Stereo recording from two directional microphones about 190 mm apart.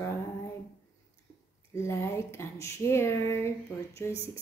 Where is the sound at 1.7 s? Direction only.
15° left (ahead or behind).